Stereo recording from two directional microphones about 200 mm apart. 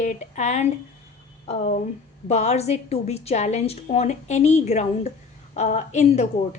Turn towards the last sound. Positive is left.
turn(degrees=35)  # may be behind; listen again after turning